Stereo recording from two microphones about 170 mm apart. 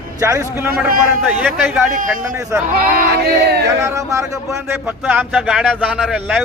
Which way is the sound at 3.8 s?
20° right (ahead or behind).